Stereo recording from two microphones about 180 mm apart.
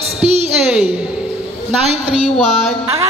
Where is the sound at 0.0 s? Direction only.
35° right (ahead or behind).